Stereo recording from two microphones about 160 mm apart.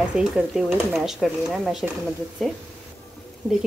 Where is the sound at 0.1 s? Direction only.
5° right (ahead or behind).